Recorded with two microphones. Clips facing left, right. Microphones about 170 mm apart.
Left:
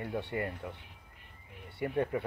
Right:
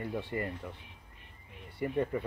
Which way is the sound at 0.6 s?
5° left (ahead or behind).